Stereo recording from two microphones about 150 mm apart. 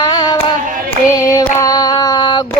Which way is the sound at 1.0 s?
20° left (ahead or behind).